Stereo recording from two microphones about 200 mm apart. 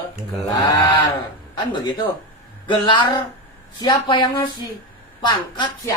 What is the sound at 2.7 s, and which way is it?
Speech, 25° left (ahead or behind).